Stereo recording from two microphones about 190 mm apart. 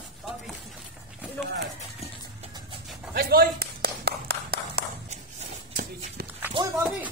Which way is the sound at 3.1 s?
50° right (ahead or behind).